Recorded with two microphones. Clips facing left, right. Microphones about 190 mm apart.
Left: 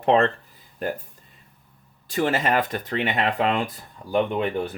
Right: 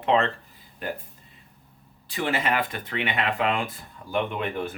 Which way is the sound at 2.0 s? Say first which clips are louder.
Left 4 dB; 45° left (ahead or behind).